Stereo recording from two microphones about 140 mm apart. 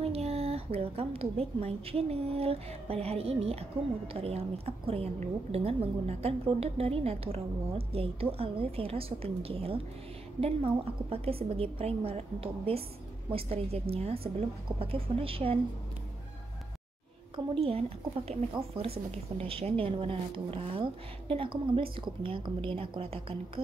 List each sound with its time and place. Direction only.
0.0 s a woman's voice: 45° right (ahead or behind)
17.6 s a woman's voice: 45° right (ahead or behind)